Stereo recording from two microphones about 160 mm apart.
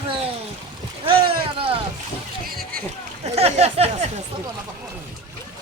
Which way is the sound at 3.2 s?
40° right (ahead or behind).